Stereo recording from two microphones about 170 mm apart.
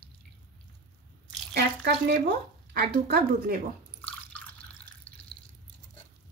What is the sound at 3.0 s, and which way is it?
Speech, 55° right (ahead or behind).